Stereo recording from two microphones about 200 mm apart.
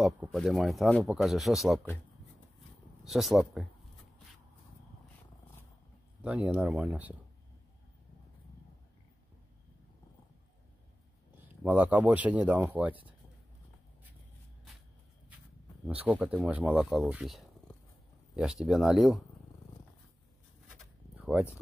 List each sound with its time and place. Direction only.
0.0 s speech: centre (ahead or behind)
3.1 s speech: centre (ahead or behind)
6.2 s speech: 5° right (ahead or behind)
11.4 s speech: 10° right (ahead or behind)
15.9 s speech: 5° right (ahead or behind)
21.2 s a sound: 5° right (ahead or behind)